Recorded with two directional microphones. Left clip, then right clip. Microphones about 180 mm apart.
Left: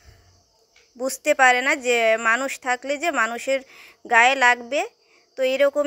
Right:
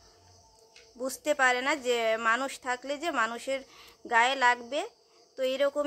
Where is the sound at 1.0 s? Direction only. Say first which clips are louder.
Left 9 dB; 30° left (ahead or behind).